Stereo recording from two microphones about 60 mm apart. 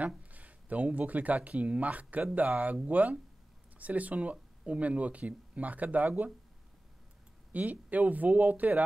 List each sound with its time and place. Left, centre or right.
0.2 s speech: right
7.5 s speech: right